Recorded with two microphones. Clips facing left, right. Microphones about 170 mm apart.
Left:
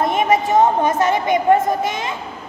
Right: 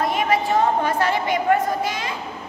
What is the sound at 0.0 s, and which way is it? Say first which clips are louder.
A woman's voice: left 4 dB; 20° left (ahead or behind).